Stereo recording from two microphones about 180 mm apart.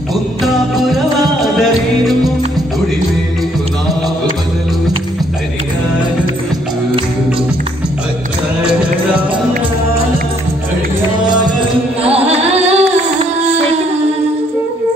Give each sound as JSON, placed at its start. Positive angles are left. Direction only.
{"t": 0.7, "sound": "music", "side_deg": 0}
{"t": 12.0, "sound": "music", "side_deg": -35}